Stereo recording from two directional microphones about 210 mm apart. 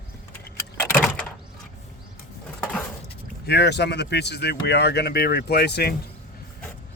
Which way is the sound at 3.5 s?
50° left (ahead or behind).